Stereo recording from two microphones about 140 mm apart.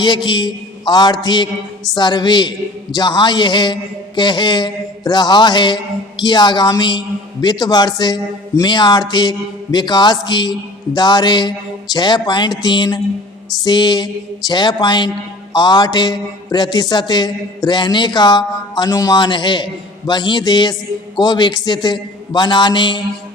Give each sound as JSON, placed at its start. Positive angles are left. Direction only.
{"t": 0.0, "sound": "speech", "side_deg": 30}